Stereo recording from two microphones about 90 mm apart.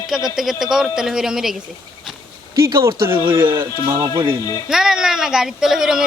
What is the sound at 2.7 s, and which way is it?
Speech, 65° right (ahead or behind).